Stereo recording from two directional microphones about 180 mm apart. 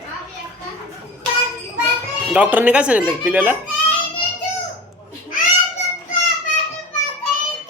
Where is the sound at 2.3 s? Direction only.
10° right (ahead or behind).